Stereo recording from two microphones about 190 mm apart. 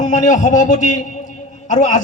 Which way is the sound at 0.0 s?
40° left (ahead or behind).